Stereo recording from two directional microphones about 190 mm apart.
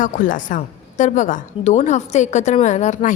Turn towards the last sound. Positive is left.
turn(degrees=40)  # may be behind; listen again after turning